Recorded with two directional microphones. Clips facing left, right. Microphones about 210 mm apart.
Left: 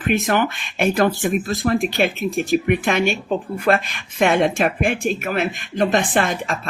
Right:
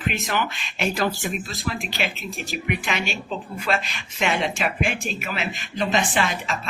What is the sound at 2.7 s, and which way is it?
Speech, 50° left (ahead or behind).